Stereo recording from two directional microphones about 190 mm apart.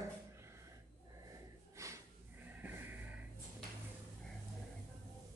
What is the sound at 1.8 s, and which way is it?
Snort, 15° right (ahead or behind).